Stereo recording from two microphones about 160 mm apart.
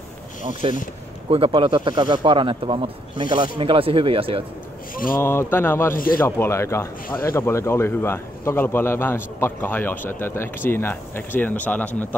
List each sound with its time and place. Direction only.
0.6 s speech: 35° right (ahead or behind)
4.9 s speech: 60° left (ahead or behind)
5.2 s a man's voice: 15° left (ahead or behind)